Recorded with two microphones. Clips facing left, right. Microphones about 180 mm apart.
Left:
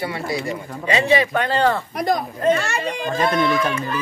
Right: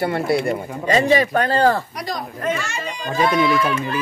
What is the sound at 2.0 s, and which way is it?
Speech, 55° left (ahead or behind).